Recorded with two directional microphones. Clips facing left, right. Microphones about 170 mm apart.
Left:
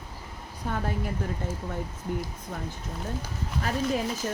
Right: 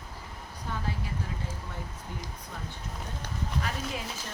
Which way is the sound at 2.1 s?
55° left (ahead or behind).